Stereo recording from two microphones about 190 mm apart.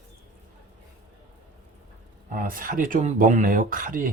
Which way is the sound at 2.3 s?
45° right (ahead or behind).